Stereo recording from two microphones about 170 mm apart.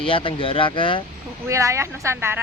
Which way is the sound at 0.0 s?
30° left (ahead or behind).